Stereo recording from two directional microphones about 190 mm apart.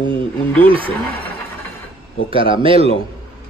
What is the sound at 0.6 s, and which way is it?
Speech, 30° right (ahead or behind).